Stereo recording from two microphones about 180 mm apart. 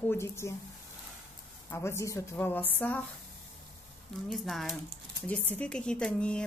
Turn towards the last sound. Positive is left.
turn(degrees=5)  # may be behind; listen again after turning